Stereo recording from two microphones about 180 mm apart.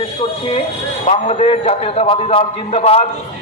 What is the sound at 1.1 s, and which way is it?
A man's voice, 35° left (ahead or behind).